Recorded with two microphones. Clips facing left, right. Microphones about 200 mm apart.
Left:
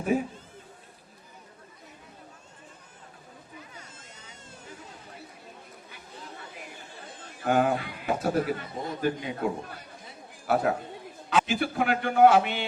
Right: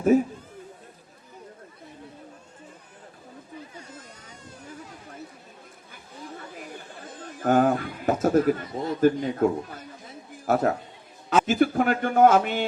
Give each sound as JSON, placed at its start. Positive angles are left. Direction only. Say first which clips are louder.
{"t": 7.3, "sound": "a man's voice", "louder": "right 4 dB", "side_deg": -45}